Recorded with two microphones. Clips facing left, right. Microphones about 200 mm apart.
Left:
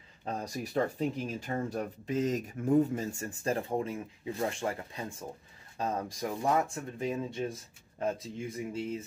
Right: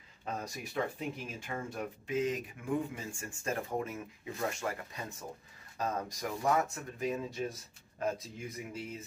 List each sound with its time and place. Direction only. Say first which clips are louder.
0.2 s speech: left 4 dB; 35° left (ahead or behind)